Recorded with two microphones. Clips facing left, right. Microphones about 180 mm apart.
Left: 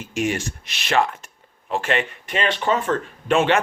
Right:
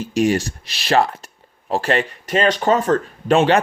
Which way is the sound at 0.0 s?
35° right (ahead or behind).